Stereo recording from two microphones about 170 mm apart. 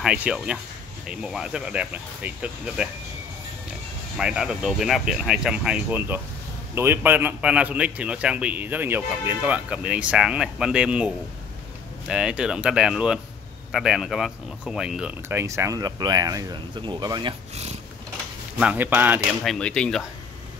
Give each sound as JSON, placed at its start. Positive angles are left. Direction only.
{"t": 0.0, "sound": "speech", "side_deg": -5}
{"t": 4.2, "sound": "a man's voice", "side_deg": -5}
{"t": 18.6, "sound": "a man's voice", "side_deg": -10}
{"t": 19.4, "sound": "speech", "side_deg": 5}